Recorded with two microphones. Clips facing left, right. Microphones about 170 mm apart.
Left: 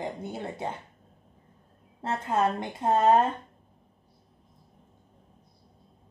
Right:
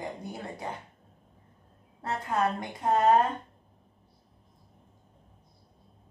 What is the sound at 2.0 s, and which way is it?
Speech, 25° left (ahead or behind).